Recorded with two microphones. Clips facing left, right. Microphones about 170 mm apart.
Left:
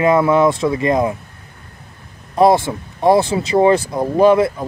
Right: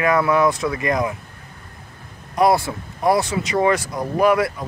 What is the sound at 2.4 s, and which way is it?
Speech, 25° left (ahead or behind).